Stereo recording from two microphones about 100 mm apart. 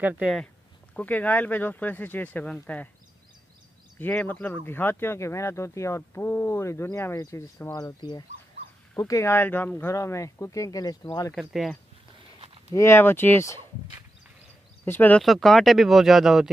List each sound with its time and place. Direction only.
0.0 s speech: 15° right (ahead or behind)
0.9 s speech: 15° left (ahead or behind)
4.1 s speech: 15° left (ahead or behind); by 7.8 s 30° left (ahead or behind)
7.8 s speech: 45° left (ahead or behind)
8.9 s speech: 30° left (ahead or behind)
9.9 s speech: 30° left (ahead or behind)
11.3 s speech: centre (ahead or behind)
12.7 s speech: 25° left (ahead or behind)
14.9 s speech: 15° left (ahead or behind)
15.2 s speech: centre (ahead or behind)